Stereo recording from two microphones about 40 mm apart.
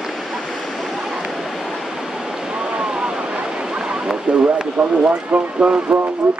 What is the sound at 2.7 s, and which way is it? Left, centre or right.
Waves, right.